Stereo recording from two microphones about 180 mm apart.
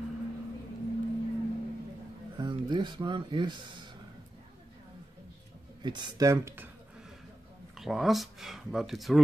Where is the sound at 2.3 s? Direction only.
25° right (ahead or behind).